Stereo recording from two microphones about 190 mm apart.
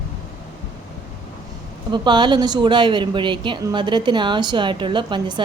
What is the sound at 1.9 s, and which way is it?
Speech, 25° right (ahead or behind).